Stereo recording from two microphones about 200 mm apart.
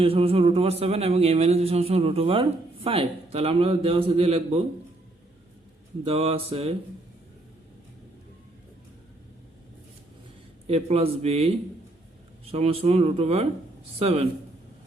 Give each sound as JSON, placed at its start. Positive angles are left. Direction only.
{"t": 0.0, "sound": "speech", "side_deg": -30}
{"t": 6.1, "sound": "speech", "side_deg": -25}
{"t": 10.7, "sound": "speech", "side_deg": -30}